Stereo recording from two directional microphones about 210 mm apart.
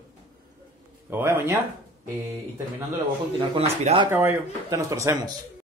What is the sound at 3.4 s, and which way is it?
Speech, 25° right (ahead or behind).